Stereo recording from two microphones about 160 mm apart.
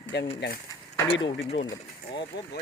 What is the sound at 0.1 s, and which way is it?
Speech, 90° left.